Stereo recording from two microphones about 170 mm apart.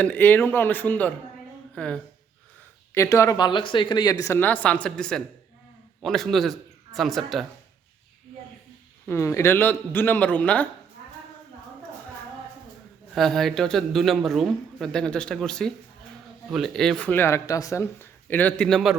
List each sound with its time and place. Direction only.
0.0 s a woman's voice: 10° left (ahead or behind)
2.9 s speech: 15° left (ahead or behind); by 7.4 s centre (ahead or behind)
9.0 s speech: 15° left (ahead or behind)
13.1 s speech: centre (ahead or behind)